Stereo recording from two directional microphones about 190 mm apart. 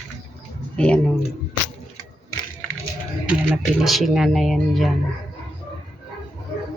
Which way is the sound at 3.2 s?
Centre (ahead or behind).